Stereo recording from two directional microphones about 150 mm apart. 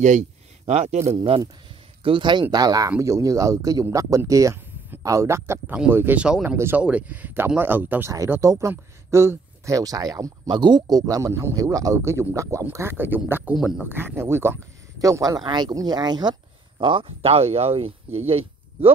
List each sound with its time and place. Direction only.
0.0 s a man's voice: 55° right (ahead or behind); by 13.6 s 15° right (ahead or behind)
13.6 s speech: centre (ahead or behind)
13.8 s speech: 15° right (ahead or behind); by 18.9 s 40° right (ahead or behind)